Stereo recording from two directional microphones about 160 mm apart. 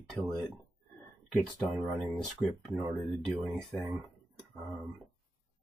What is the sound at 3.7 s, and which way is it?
Speech, centre (ahead or behind).